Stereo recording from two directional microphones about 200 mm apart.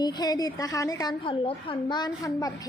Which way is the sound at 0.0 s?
20° left (ahead or behind).